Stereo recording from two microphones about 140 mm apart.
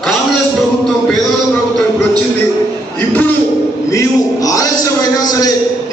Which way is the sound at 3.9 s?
25° left (ahead or behind).